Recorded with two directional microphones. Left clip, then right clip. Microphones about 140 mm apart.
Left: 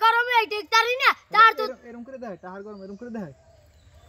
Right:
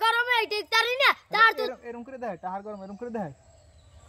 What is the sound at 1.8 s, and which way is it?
Speech, 60° right (ahead or behind).